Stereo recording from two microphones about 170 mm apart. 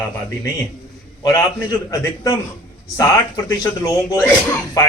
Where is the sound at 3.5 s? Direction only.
20° left (ahead or behind).